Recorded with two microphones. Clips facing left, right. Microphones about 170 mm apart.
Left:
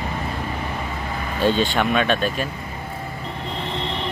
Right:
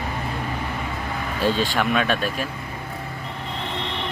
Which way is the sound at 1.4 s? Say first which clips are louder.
Left 3 dB; centre (ahead or behind).